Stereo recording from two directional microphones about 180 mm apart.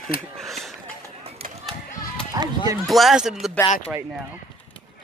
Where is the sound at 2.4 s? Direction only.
20° right (ahead or behind).